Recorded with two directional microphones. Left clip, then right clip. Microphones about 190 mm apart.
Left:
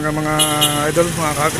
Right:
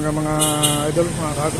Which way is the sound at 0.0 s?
Centre (ahead or behind).